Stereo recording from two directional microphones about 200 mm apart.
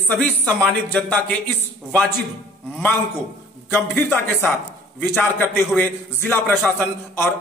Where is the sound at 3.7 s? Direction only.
10° left (ahead or behind).